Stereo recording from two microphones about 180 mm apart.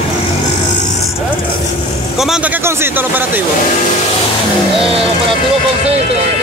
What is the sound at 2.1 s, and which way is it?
Speech, 5° right (ahead or behind).